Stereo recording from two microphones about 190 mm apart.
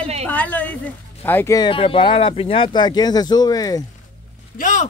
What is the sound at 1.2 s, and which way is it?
Speech, 10° left (ahead or behind).